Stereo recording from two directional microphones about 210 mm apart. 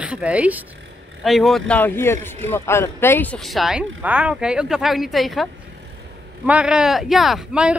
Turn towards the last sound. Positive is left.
turn(degrees=-5)  # may be behind; listen again after turning